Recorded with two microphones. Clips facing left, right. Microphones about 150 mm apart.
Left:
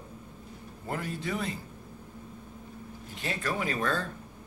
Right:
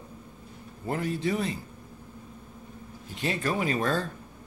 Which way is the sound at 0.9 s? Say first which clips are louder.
Right 5 dB; 25° right (ahead or behind).